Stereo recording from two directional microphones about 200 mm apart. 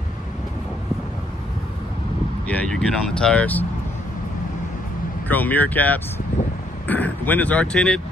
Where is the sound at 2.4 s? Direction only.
5° left (ahead or behind).